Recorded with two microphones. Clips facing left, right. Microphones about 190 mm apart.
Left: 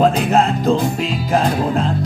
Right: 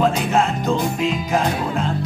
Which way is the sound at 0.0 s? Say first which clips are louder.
Left 4 dB; 35° left (ahead or behind).